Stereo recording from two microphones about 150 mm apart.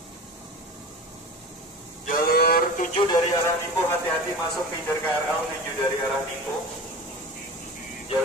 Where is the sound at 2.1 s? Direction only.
90° left; by 2.9 s 70° left (ahead or behind).